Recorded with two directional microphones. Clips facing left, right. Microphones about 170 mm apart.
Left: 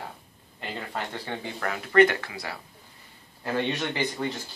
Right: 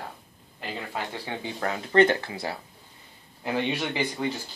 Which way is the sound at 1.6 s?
25° right (ahead or behind).